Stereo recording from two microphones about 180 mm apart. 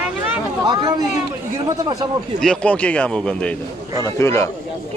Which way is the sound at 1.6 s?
20° right (ahead or behind).